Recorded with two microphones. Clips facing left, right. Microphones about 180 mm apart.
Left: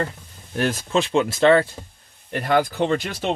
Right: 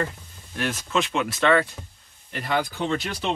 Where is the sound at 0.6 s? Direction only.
35° left (ahead or behind).